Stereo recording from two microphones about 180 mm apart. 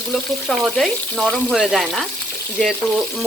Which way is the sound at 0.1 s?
Centre (ahead or behind).